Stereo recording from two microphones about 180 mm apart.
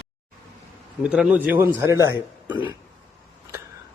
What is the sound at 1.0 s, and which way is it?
A man's voice, 5° right (ahead or behind).